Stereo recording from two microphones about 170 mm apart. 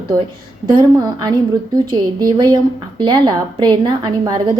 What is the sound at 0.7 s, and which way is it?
A woman's voice, 25° right (ahead or behind).